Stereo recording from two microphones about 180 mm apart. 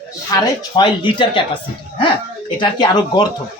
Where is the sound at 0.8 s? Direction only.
25° left (ahead or behind).